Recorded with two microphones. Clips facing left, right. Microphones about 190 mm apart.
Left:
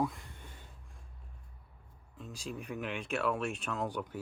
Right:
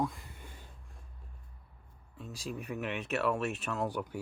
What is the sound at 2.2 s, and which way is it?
Speech, 5° right (ahead or behind).